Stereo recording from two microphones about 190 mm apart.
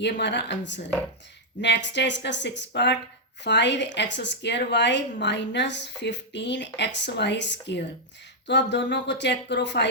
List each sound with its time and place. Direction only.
0.0 s a woman's voice: 65° left (ahead or behind)